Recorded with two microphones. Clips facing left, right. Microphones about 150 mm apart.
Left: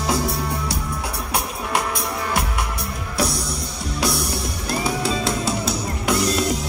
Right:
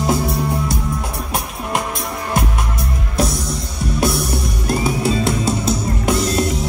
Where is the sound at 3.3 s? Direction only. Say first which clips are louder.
Right 3 dB; 50° right (ahead or behind).